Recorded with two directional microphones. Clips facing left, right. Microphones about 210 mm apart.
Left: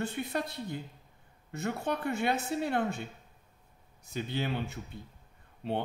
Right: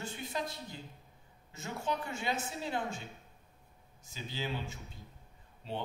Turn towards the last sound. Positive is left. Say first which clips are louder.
# left 7 dB
turn(degrees=60)  # may be behind; listen again after turning